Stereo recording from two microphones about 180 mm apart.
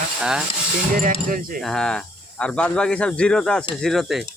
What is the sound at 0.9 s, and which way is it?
Speech, 50° right (ahead or behind).